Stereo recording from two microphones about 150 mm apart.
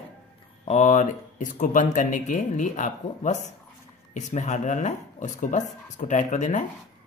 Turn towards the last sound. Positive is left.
turn(degrees=55)  # may be behind; listen again after turning